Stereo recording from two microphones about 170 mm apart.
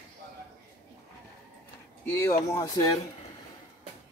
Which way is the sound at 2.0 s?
15° left (ahead or behind).